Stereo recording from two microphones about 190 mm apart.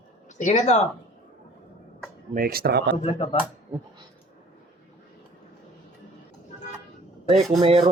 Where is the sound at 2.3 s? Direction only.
50° right (ahead or behind).